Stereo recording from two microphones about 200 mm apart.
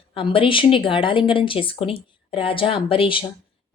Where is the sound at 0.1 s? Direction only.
25° left (ahead or behind).